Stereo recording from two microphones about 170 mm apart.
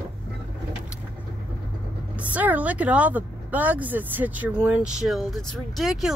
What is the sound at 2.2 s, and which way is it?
Speech, 10° right (ahead or behind).